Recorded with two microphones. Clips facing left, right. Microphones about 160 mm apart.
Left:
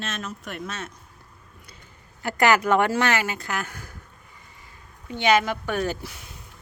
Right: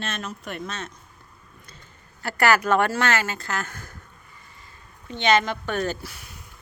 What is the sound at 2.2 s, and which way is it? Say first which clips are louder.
Speech: left 1 dB; 20° left (ahead or behind).